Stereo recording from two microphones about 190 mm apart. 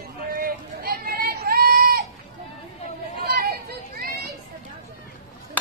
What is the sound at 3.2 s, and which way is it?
Chatter, 50° right (ahead or behind).